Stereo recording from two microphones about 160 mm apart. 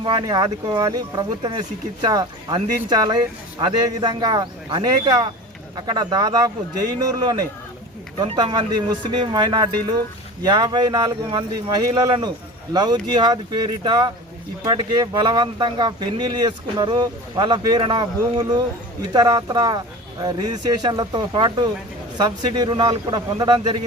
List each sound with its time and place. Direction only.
0.0 s speech: 25° right (ahead or behind)